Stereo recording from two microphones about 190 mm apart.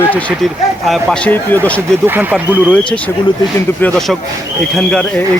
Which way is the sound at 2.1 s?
10° right (ahead or behind).